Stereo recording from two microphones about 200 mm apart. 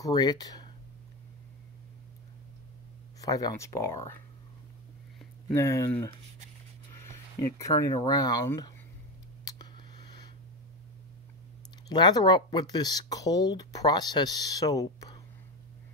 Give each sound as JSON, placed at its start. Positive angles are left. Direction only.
{"t": 0.0, "sound": "speech", "side_deg": 20}
{"t": 3.2, "sound": "speech", "side_deg": 15}
{"t": 5.5, "sound": "speech", "side_deg": 15}
{"t": 9.4, "sound": "clicking", "side_deg": 20}
{"t": 11.9, "sound": "speech", "side_deg": 20}